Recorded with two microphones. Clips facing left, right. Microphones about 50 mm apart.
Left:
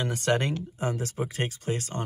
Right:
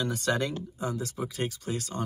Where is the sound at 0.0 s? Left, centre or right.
Left.